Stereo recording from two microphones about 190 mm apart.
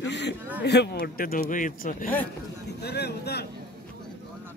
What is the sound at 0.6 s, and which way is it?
A man's voice, 60° left (ahead or behind).